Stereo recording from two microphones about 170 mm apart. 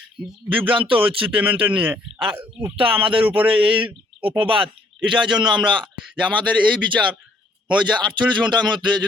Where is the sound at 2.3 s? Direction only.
10° right (ahead or behind).